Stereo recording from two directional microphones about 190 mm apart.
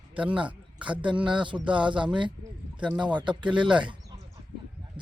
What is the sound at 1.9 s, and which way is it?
Speech, 5° right (ahead or behind).